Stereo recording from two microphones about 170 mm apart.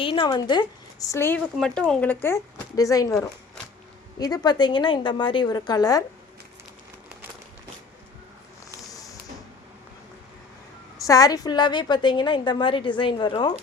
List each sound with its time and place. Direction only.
0.0 s a woman's voice: 30° left (ahead or behind)
1.5 s a woman's voice: 5° left (ahead or behind); by 6.1 s 20° left (ahead or behind)
8.8 s music: 20° left (ahead or behind)
11.0 s a woman's voice: 20° left (ahead or behind)